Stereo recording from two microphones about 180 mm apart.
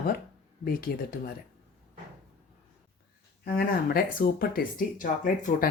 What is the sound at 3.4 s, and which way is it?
Speech, 55° left (ahead or behind).